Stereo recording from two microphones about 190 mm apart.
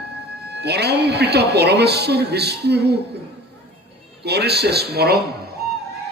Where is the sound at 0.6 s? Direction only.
60° right (ahead or behind).